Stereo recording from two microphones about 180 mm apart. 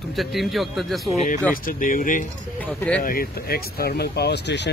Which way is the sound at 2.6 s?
5° left (ahead or behind).